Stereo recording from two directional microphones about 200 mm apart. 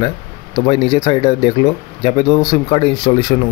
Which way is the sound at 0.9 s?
20° left (ahead or behind).